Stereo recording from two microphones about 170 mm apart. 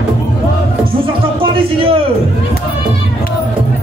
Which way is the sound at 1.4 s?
30° right (ahead or behind).